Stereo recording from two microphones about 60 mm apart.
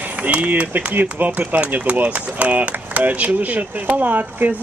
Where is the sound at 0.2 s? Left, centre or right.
Right.